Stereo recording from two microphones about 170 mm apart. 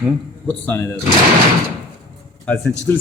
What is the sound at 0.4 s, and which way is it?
Speech, 10° left (ahead or behind).